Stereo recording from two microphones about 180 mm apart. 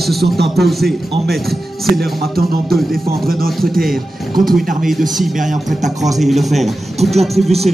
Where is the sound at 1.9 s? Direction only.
55° right (ahead or behind).